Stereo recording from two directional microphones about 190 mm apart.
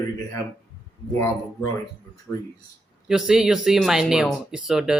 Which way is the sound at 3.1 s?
Centre (ahead or behind).